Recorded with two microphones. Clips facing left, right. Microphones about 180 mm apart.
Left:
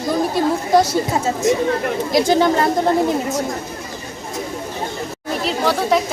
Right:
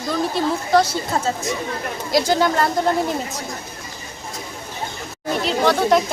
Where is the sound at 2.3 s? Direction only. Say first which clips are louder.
Left 4 dB; 20° left (ahead or behind).